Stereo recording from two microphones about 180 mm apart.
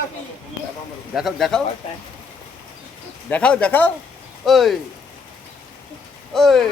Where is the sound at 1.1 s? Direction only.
Centre (ahead or behind).